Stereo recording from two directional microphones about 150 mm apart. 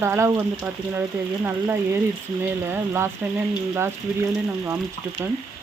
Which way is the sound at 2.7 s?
15° right (ahead or behind).